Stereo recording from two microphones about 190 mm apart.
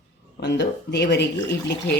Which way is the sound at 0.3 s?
65° left (ahead or behind).